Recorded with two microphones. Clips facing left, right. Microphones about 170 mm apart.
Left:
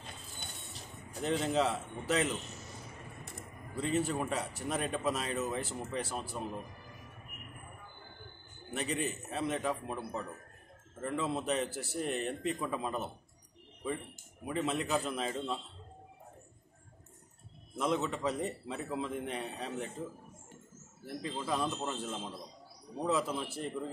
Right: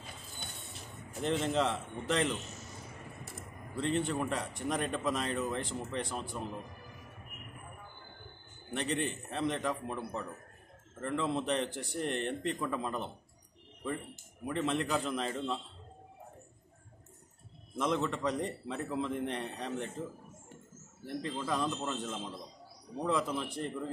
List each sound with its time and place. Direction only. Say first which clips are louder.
0.4 s a sound: right 1 dB; centre (ahead or behind)
3.3 s speech: right 1 dB; centre (ahead or behind)
8.7 s speech: right 1 dB; 5° left (ahead or behind)
14.4 s speech: right 1 dB; 5° left (ahead or behind)
17.7 s speech: right 1 dB; 5° left (ahead or behind)
21.0 s speech: right 2 dB; 5° left (ahead or behind)